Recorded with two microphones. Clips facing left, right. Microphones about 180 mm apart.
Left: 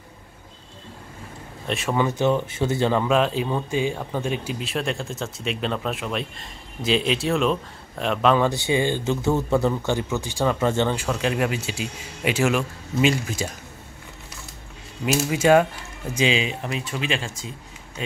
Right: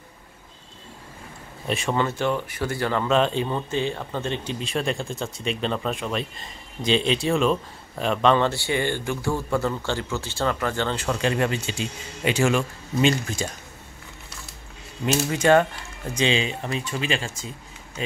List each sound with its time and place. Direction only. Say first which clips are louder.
1.7 s speech: even; centre (ahead or behind)
2.0 s speech: left 5 dB; 15° left (ahead or behind)
3.2 s speech: even; 5° left (ahead or behind)
8.5 s speech: left 3 dB; 15° left (ahead or behind)
11.0 s speech: even; 5° left (ahead or behind)
15.0 s speech: left 1 dB; 5° left (ahead or behind)